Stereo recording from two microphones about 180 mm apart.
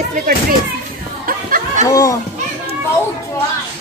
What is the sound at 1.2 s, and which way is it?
Music, 50° right (ahead or behind).